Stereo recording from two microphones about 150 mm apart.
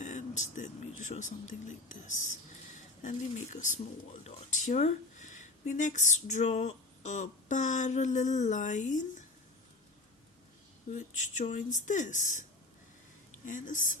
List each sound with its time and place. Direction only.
0.0 s speech: 55° left (ahead or behind)
10.9 s speech: 55° left (ahead or behind)